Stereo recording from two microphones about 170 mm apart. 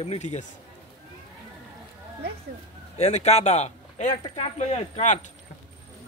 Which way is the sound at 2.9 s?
40° left (ahead or behind).